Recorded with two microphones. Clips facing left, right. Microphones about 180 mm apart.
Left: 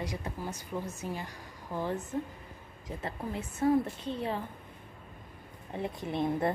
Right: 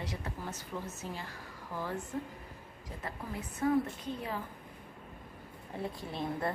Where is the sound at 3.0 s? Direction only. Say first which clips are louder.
Left 4 dB; 25° left (ahead or behind).